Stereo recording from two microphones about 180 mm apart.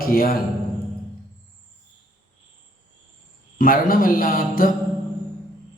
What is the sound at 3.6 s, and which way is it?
A man's voice, 50° left (ahead or behind).